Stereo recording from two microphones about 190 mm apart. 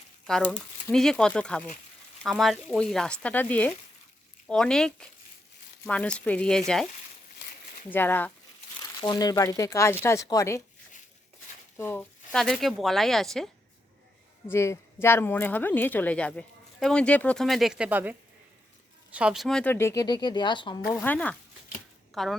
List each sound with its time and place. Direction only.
0.3 s speech: 5° left (ahead or behind)
7.9 s speech: 10° left (ahead or behind)
9.0 s speech: 20° left (ahead or behind)
11.8 s speech: 10° left (ahead or behind)
14.5 s speech: 15° left (ahead or behind)
20.9 s a woman's voice: 10° left (ahead or behind)